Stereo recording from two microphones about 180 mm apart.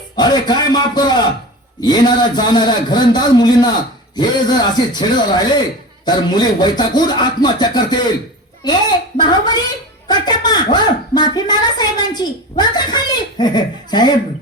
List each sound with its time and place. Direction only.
0.2 s a woman's voice: 25° left (ahead or behind)